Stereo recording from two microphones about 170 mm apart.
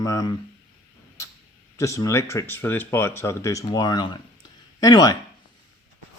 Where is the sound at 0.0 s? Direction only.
20° left (ahead or behind).